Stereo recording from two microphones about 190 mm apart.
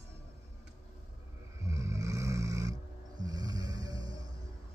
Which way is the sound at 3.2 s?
20° right (ahead or behind).